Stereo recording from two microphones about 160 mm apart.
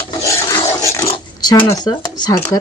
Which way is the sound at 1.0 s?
25° left (ahead or behind).